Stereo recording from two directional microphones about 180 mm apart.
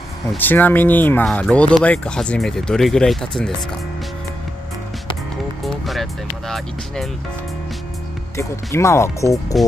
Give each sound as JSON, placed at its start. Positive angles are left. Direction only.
{"t": 0.4, "sound": "speech", "side_deg": 10}
{"t": 5.6, "sound": "speech", "side_deg": 0}
{"t": 8.4, "sound": "speech", "side_deg": 15}